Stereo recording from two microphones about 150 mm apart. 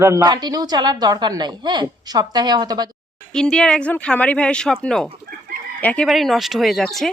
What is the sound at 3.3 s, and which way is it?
Speech, 5° left (ahead or behind).